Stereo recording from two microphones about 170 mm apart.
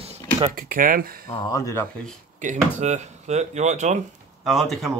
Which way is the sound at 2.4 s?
45° right (ahead or behind).